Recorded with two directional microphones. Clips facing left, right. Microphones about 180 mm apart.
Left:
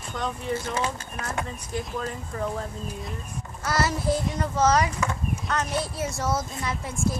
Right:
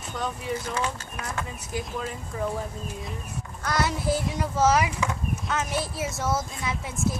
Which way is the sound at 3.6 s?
Centre (ahead or behind).